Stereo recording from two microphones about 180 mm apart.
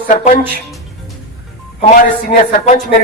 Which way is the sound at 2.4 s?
50° left (ahead or behind).